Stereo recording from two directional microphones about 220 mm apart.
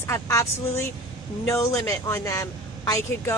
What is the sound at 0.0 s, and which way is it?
Speech, 15° left (ahead or behind).